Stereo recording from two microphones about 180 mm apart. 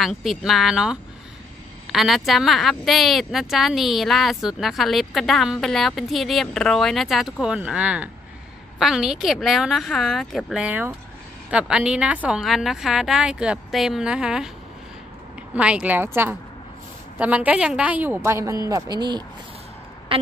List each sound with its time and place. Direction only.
0.0 s speech: centre (ahead or behind)
15.5 s a woman's voice: 5° right (ahead or behind); by 19.2 s 25° right (ahead or behind)
20.1 s a sound: 30° right (ahead or behind)